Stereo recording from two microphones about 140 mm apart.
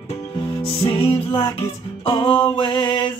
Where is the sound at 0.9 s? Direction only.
40° left (ahead or behind).